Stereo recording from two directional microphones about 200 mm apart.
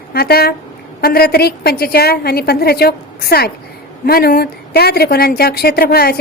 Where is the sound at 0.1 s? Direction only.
50° left (ahead or behind).